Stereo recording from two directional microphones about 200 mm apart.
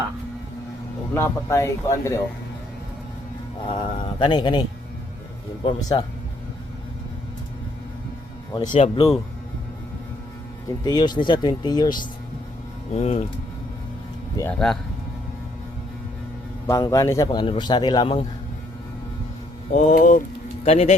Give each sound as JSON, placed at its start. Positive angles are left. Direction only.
{"t": 1.1, "sound": "speech", "side_deg": 15}
{"t": 3.7, "sound": "a man's voice", "side_deg": 25}
{"t": 5.6, "sound": "a man's voice", "side_deg": 20}
{"t": 8.7, "sound": "speech", "side_deg": 30}
{"t": 10.8, "sound": "a man's voice", "side_deg": 20}
{"t": 12.9, "sound": "speech", "side_deg": 35}
{"t": 14.4, "sound": "a man's voice", "side_deg": 20}
{"t": 16.6, "sound": "a man's voice", "side_deg": 15}
{"t": 19.7, "sound": "a man's voice", "side_deg": 40}